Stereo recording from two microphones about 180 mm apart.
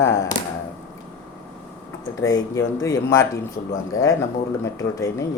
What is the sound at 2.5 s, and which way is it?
A man's voice, 15° left (ahead or behind).